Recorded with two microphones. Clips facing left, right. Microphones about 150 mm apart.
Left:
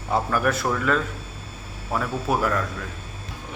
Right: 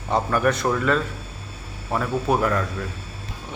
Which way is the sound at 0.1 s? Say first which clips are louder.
Right 2 dB; centre (ahead or behind).